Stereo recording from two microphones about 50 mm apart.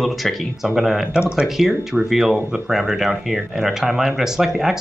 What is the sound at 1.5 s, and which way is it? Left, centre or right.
Speech, centre.